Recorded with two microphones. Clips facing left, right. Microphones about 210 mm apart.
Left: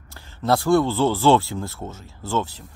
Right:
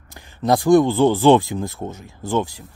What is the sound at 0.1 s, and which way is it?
Speech, 15° right (ahead or behind).